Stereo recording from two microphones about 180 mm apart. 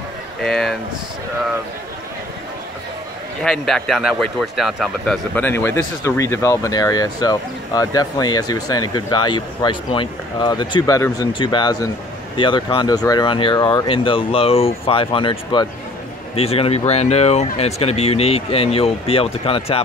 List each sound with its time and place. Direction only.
0.4 s speech: centre (ahead or behind)
3.4 s a man's voice: 5° left (ahead or behind); by 19.8 s 30° left (ahead or behind)